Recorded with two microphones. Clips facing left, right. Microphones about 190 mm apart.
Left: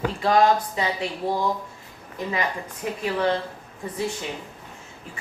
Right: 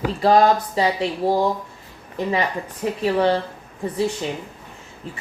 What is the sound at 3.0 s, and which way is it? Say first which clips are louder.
Speech: right 5 dB; 35° right (ahead or behind).